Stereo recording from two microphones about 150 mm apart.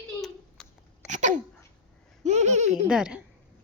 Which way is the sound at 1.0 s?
55° right (ahead or behind).